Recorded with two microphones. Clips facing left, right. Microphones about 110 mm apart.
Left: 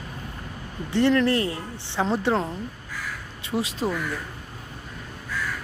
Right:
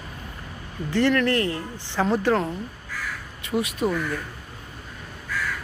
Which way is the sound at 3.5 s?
5° left (ahead or behind).